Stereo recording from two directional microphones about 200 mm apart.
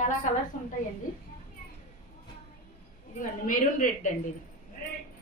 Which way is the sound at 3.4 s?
40° left (ahead or behind).